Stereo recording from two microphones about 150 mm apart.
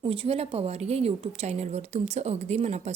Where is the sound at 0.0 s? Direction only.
40° right (ahead or behind).